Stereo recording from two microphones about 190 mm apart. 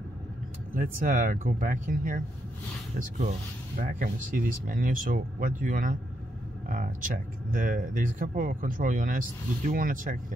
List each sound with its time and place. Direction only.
0.7 s speech: 45° right (ahead or behind)